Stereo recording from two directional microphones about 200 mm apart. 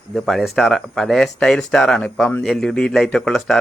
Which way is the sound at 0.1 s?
Centre (ahead or behind).